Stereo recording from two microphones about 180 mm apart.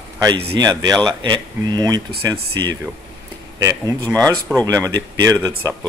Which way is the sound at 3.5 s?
20° right (ahead or behind).